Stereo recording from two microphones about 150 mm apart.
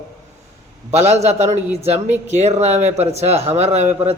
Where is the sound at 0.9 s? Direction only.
50° right (ahead or behind).